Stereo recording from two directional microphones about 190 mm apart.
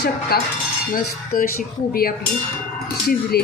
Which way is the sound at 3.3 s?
55° left (ahead or behind).